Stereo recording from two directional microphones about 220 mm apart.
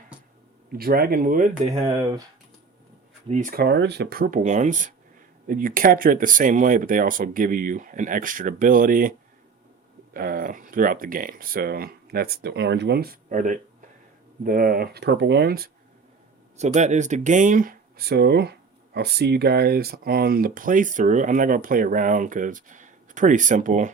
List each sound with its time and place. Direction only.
0.7 s speech: 45° right (ahead or behind); by 2.1 s 30° right (ahead or behind)
3.2 s speech: 35° right (ahead or behind)
10.2 s speech: 40° right (ahead or behind)
16.6 s speech: 30° right (ahead or behind)